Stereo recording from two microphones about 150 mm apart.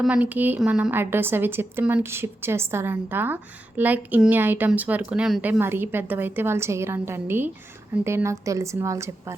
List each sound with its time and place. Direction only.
0.0 s a woman's voice: 10° right (ahead or behind)